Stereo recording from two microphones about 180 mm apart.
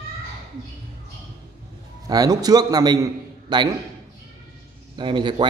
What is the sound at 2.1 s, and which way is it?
A man's voice, 20° right (ahead or behind).